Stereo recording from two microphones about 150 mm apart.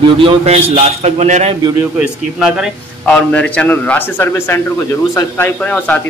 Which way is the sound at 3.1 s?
5° left (ahead or behind).